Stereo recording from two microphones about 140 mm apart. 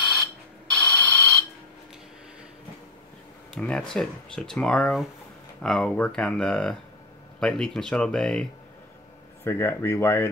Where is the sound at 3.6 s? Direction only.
5° left (ahead or behind).